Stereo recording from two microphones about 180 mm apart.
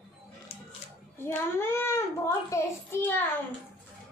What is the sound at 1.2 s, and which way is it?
A child's voice, 15° left (ahead or behind).